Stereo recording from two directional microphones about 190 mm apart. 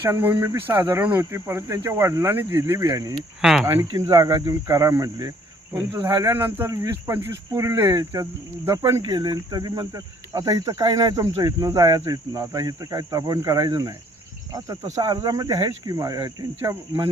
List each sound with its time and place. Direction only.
0.0 s cricket: 10° right (ahead or behind)
3.4 s speech: 5° right (ahead or behind)
3.9 s speech: 20° right (ahead or behind)
14.9 s speech: 20° right (ahead or behind)